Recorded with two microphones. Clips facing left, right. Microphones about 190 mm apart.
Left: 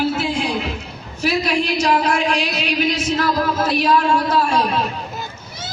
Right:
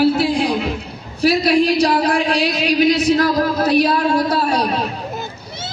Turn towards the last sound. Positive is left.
turn(degrees=-40)  # may be behind; listen again after turning